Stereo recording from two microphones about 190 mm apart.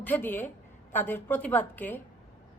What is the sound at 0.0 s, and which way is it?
A woman's voice, 10° left (ahead or behind).